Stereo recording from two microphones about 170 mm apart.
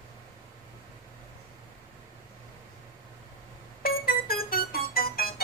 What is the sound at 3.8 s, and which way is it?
Music, 60° left (ahead or behind).